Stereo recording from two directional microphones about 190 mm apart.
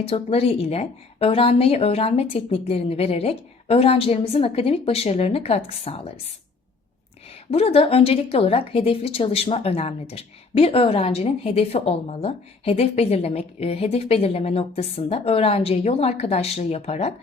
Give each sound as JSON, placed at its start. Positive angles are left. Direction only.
{"t": 0.0, "sound": "speech", "side_deg": 30}
{"t": 7.5, "sound": "speech", "side_deg": 30}